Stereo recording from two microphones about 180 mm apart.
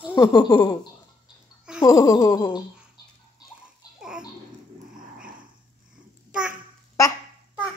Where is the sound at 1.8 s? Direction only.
20° left (ahead or behind).